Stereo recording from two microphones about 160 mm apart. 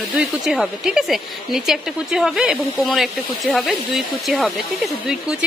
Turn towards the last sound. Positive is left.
turn(degrees=-5)  # may be behind; listen again after turning